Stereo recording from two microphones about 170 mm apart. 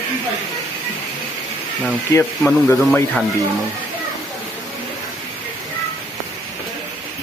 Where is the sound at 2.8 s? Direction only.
5° left (ahead or behind).